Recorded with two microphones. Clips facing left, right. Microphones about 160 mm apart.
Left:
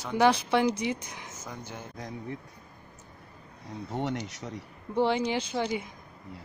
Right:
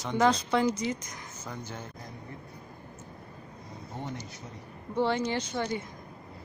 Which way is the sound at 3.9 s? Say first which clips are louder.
Left 7 dB; 75° left (ahead or behind).